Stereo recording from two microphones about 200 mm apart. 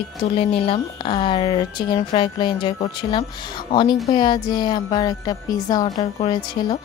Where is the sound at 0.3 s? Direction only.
30° left (ahead or behind).